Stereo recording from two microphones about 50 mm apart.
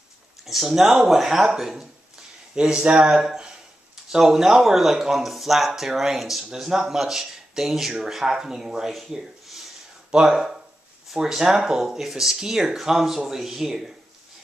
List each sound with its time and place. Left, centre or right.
0.5 s speech: centre
2.5 s speech: centre
8.9 s rub: centre
10.1 s speech: centre